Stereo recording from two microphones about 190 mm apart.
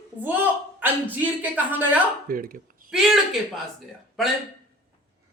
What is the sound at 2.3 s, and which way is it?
Speech, 50° right (ahead or behind).